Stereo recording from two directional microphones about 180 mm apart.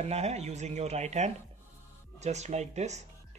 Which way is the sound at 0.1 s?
35° right (ahead or behind).